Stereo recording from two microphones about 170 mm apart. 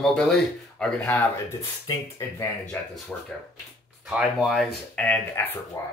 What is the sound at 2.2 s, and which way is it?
Speech, 20° left (ahead or behind).